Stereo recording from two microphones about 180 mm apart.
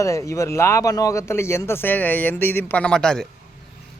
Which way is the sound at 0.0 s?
15° left (ahead or behind).